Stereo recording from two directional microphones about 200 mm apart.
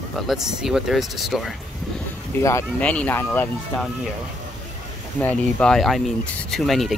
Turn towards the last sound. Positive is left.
turn(degrees=0)  # may be behind; listen again after turning